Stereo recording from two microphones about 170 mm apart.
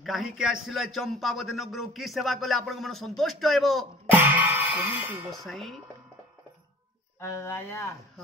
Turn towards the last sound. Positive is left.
turn(degrees=15)  # may be behind; listen again after turning